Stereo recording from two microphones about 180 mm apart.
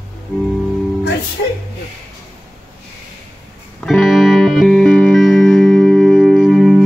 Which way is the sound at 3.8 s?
Centre (ahead or behind).